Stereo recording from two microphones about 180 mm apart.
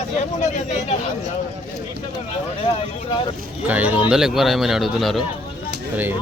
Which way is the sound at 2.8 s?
30° left (ahead or behind).